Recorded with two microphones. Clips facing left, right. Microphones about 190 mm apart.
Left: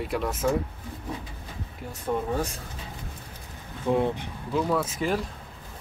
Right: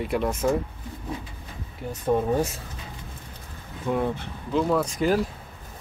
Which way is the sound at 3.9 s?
25° left (ahead or behind).